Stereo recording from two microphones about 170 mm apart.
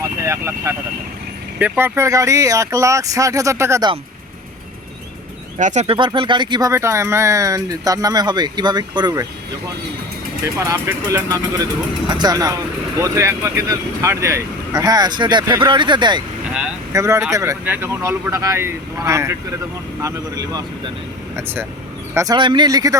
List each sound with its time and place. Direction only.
0.2 s speech: 15° right (ahead or behind)
5.5 s speech: 45° right (ahead or behind); by 9.2 s 25° right (ahead or behind)
10.6 s speech: 20° right (ahead or behind)